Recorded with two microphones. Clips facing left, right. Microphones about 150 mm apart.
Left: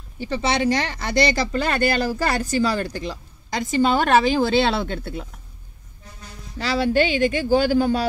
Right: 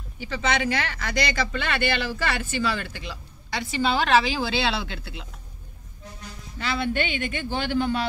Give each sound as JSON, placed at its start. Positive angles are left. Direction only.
{"t": 0.3, "sound": "speech", "side_deg": 35}
{"t": 6.6, "sound": "speech", "side_deg": 40}